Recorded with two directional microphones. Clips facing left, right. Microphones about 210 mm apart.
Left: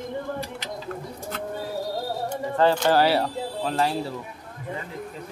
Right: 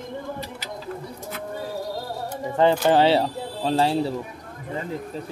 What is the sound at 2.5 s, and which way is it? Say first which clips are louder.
Speech: right 2 dB; 15° right (ahead or behind).